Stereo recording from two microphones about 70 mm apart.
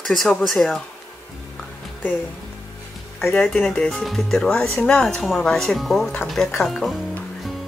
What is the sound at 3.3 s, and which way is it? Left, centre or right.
Speech, centre.